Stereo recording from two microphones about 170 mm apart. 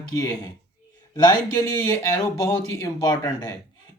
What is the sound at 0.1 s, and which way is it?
Speech, 20° left (ahead or behind).